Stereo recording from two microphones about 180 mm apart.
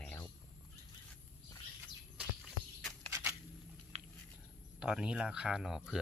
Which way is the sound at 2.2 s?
5° right (ahead or behind).